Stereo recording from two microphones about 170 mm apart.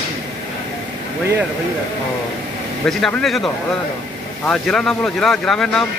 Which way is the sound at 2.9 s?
5° left (ahead or behind).